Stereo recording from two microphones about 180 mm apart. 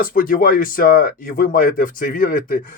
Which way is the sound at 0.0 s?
50° left (ahead or behind).